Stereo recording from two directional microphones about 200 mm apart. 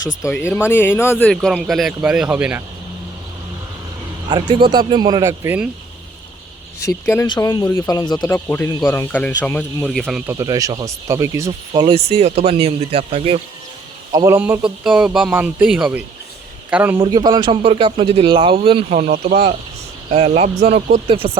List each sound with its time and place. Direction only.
0.2 s speech: 10° left (ahead or behind); by 2.6 s 5° right (ahead or behind)
4.3 s speech: 25° right (ahead or behind)
6.8 s speech: 15° left (ahead or behind); by 13.4 s 30° right (ahead or behind)
14.1 s a man's voice: 15° right (ahead or behind)
17.0 s speech: 20° right (ahead or behind)